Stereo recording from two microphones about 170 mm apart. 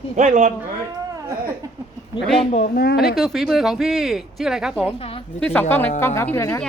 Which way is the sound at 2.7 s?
70° left (ahead or behind).